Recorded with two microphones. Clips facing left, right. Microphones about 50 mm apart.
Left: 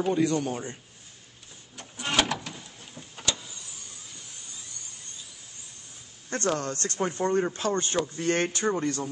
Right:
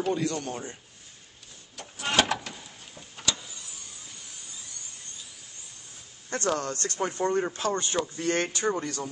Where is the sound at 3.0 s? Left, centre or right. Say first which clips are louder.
Left 4 dB; centre.